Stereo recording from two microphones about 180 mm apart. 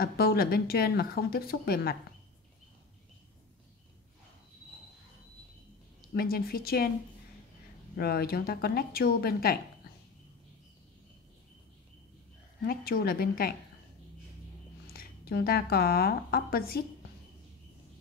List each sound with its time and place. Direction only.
0.0 s speech: 60° left (ahead or behind)
6.1 s speech: 55° left (ahead or behind)
8.0 s speech: 60° left (ahead or behind)
12.6 s speech: 55° left (ahead or behind)
14.9 s speech: 60° left (ahead or behind)